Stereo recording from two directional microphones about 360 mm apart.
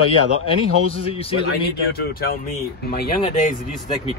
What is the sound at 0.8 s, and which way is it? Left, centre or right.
A man's voice, centre.